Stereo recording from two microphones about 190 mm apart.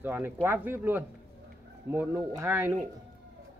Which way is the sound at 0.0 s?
10° right (ahead or behind).